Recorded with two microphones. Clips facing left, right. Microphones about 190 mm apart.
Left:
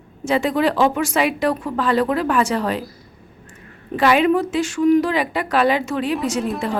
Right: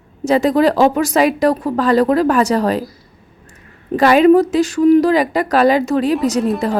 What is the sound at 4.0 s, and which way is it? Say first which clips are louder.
Speech: right 6 dB; 40° right (ahead or behind).